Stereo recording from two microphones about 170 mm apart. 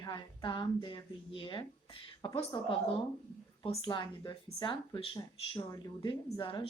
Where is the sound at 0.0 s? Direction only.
25° left (ahead or behind).